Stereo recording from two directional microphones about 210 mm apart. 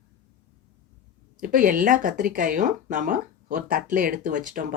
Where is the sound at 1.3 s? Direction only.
40° right (ahead or behind).